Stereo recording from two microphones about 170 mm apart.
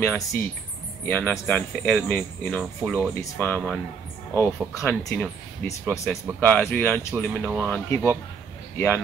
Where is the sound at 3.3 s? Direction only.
10° left (ahead or behind).